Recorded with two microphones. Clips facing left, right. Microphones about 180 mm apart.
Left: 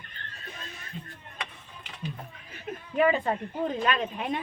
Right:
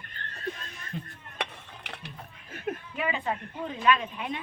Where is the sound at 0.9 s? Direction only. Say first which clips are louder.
Right 4 dB; 55° right (ahead or behind).